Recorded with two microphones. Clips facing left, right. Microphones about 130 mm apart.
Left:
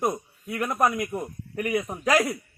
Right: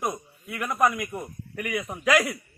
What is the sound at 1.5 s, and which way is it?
Speech, 35° left (ahead or behind).